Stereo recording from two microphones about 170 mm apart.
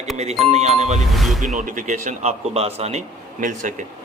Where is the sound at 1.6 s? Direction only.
45° right (ahead or behind).